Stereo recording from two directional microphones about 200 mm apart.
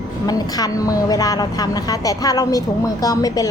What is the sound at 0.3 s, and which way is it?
A woman's voice, 20° left (ahead or behind).